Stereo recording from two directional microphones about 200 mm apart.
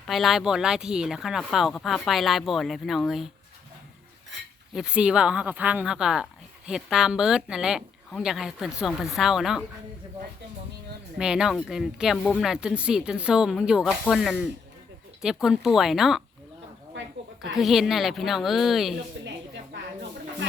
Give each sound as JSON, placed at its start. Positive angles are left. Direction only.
{"t": 0.1, "sound": "speech", "side_deg": 0}
{"t": 4.7, "sound": "speech", "side_deg": -5}
{"t": 11.2, "sound": "speech", "side_deg": -5}
{"t": 16.9, "sound": "a sound", "side_deg": -65}
{"t": 17.5, "sound": "speech", "side_deg": 0}